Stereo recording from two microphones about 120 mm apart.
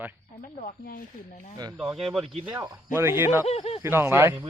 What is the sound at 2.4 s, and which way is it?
Speech, 20° right (ahead or behind).